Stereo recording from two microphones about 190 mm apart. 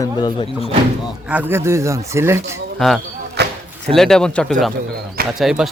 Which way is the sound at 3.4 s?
60° right (ahead or behind).